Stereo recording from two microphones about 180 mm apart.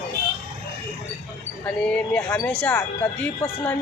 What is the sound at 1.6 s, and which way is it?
A woman's voice, 5° left (ahead or behind).